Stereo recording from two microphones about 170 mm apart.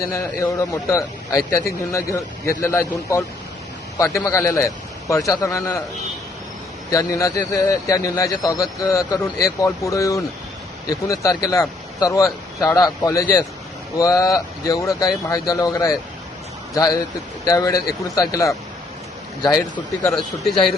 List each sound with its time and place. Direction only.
0.0 s speech: 15° left (ahead or behind)
6.9 s a man's voice: 20° left (ahead or behind)
19.7 s speech: 10° left (ahead or behind)